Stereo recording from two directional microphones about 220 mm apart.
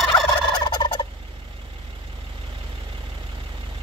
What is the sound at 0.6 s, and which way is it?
Fowl, 20° left (ahead or behind).